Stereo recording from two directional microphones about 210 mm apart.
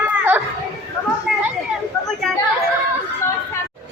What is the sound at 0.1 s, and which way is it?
Children playing, 10° right (ahead or behind).